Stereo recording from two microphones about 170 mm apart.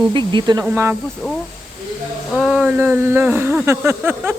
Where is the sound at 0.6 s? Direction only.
10° right (ahead or behind).